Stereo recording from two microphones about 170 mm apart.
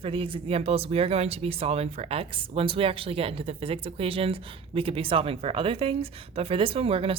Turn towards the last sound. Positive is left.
turn(degrees=-35)  # may be behind; listen again after turning